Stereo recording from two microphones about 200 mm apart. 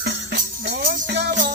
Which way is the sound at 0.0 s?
55° right (ahead or behind).